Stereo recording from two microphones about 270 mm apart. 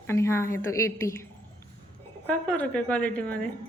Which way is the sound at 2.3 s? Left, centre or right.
Centre.